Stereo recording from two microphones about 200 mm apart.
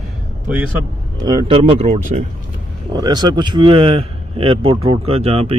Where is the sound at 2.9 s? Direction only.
20° right (ahead or behind).